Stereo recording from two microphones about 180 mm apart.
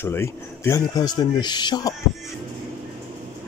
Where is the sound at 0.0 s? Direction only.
15° left (ahead or behind).